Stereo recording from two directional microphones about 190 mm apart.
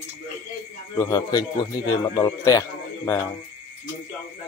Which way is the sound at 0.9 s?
15° left (ahead or behind).